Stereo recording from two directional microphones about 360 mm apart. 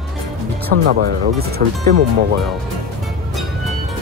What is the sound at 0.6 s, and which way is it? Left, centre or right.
Speech, right.